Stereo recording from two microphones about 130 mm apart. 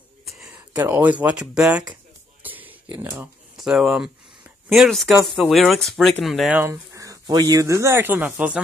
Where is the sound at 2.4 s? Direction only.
15° right (ahead or behind).